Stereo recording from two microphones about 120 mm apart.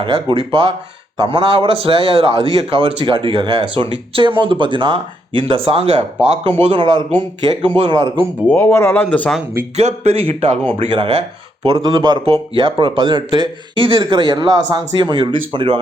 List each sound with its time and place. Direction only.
0.0 s a man's voice: 45° right (ahead or behind)
8.5 s speech: 20° left (ahead or behind)
9.7 s a man's voice: 65° right (ahead or behind); by 11.2 s 45° right (ahead or behind)
11.8 s speech: 30° right (ahead or behind)
12.2 s speech: 50° right (ahead or behind)